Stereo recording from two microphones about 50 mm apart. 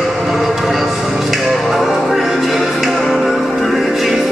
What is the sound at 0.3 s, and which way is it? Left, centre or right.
Music, centre.